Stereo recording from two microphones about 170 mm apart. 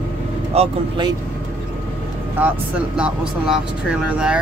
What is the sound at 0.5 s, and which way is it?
Speech, 35° right (ahead or behind).